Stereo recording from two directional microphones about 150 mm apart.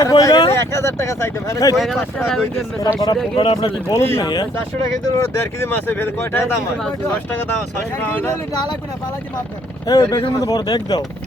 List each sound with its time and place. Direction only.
0.0 s speech: 25° left (ahead or behind)
1.7 s speech: centre (ahead or behind)
3.3 s speech: 35° left (ahead or behind); by 6.4 s 15° left (ahead or behind)
8.1 s speech: 10° left (ahead or behind)
9.8 s speech: 25° left (ahead or behind)